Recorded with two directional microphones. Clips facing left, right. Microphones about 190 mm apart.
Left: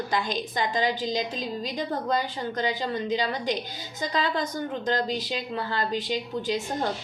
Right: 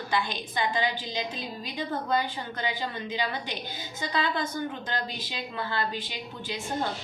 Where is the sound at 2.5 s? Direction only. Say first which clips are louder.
Left 5 dB; 40° left (ahead or behind).